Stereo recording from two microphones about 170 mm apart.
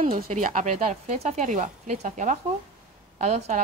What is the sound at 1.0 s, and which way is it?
A woman's voice, 40° right (ahead or behind).